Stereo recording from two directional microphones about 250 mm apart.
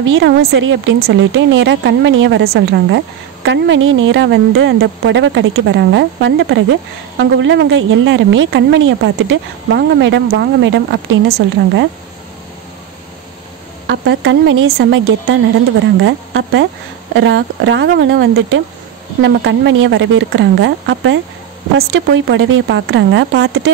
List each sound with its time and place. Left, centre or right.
0.1 s speech: right
13.8 s speech: right